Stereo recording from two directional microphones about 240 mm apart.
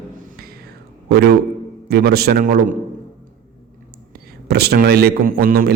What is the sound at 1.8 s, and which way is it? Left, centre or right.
Speech, right.